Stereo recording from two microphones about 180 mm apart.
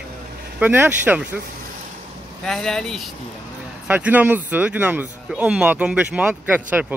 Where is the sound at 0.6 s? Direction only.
10° right (ahead or behind).